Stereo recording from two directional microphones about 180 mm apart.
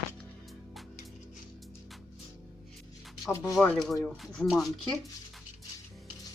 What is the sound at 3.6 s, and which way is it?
Speech, centre (ahead or behind).